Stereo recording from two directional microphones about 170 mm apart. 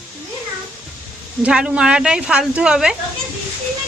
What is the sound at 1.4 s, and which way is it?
Speech, 5° right (ahead or behind).